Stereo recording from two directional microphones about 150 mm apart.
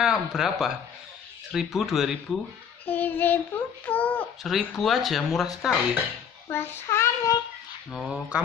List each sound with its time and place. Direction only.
0.0 s speech: centre (ahead or behind)
2.8 s child singing: 10° left (ahead or behind)
4.4 s speech: centre (ahead or behind)
6.5 s child singing: 15° left (ahead or behind)
7.9 s speech: 5° right (ahead or behind)